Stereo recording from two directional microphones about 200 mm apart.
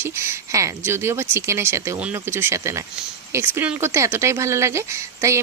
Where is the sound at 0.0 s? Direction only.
15° right (ahead or behind).